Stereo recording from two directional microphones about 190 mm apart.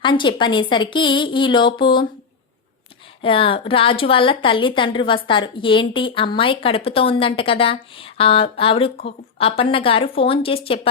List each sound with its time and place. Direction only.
0.0 s speech: 25° left (ahead or behind)
3.2 s speech: 30° left (ahead or behind)